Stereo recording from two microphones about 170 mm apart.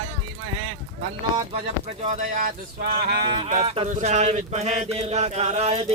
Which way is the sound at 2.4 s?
55° right (ahead or behind).